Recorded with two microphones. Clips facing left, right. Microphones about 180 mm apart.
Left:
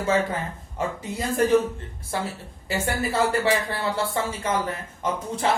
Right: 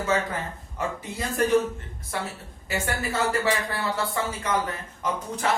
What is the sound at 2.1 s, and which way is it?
A woman's voice, 30° left (ahead or behind).